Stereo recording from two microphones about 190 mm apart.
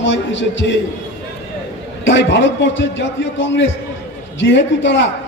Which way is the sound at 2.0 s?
75° left (ahead or behind).